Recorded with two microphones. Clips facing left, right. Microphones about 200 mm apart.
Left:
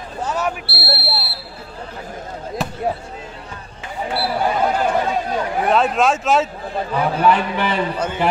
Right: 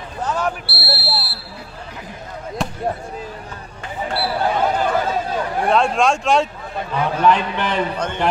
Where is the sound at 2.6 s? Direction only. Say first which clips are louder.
Right 1 dB; centre (ahead or behind).